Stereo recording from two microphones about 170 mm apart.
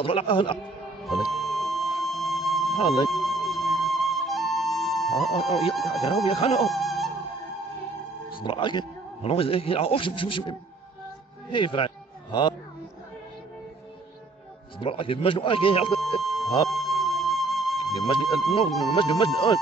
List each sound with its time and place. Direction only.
0.0 s a man's voice: 30° left (ahead or behind)
1.0 s music: centre (ahead or behind)
3.1 s flute: centre (ahead or behind)
6.0 s a man's voice: 30° left (ahead or behind)
6.7 s music: centre (ahead or behind)
8.4 s a man's voice: 30° left (ahead or behind)
11.5 s music: 30° left (ahead or behind)
14.8 s a man's voice: 30° left (ahead or behind)
16.2 s a sound: centre (ahead or behind)
16.6 s music: centre (ahead or behind)
18.7 s speech: centre (ahead or behind)
18.9 s speech: 30° left (ahead or behind)